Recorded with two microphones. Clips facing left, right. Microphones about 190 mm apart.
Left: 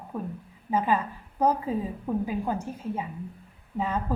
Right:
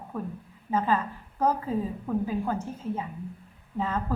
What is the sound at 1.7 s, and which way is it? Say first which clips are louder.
A woman's voice: even; 15° left (ahead or behind).